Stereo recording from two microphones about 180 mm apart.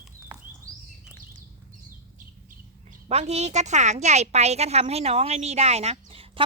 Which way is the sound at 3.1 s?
35° right (ahead or behind).